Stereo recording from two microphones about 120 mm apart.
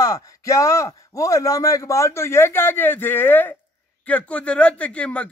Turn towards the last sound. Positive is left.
turn(degrees=10)  # may be behind; listen again after turning